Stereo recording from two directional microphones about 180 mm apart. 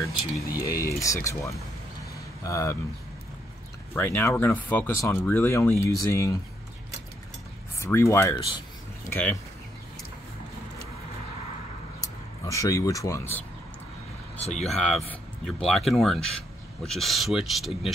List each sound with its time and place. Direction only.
0.7 s speech: 15° left (ahead or behind)
3.9 s speech: 10° left (ahead or behind)
7.8 s speech: 15° left (ahead or behind)
12.4 s speech: 20° left (ahead or behind)
14.4 s speech: 35° left (ahead or behind)
14.7 s speech: centre (ahead or behind)